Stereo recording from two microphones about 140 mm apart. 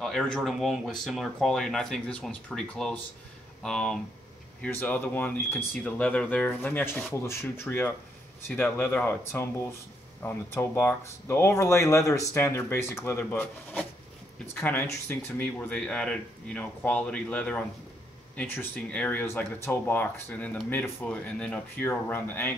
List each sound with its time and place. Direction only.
0.0 s speech: centre (ahead or behind)